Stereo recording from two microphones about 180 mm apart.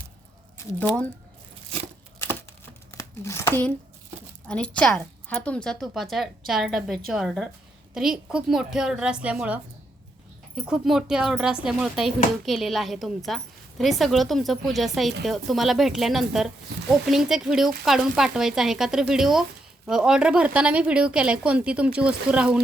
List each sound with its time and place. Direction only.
0.5 s speech: 5° left (ahead or behind)
2.9 s crumpling: 15° left (ahead or behind)
4.4 s speech: 5° left (ahead or behind)